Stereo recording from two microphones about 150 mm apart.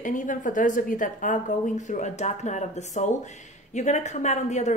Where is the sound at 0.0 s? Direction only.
60° left (ahead or behind).